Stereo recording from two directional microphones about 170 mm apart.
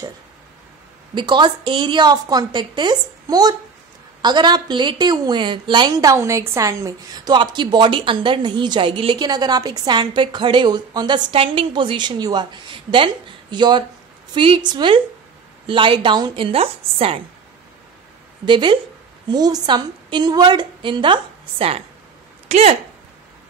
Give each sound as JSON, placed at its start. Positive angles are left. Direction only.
{"t": 1.1, "sound": "a woman's voice", "side_deg": -30}
{"t": 18.4, "sound": "a woman's voice", "side_deg": -30}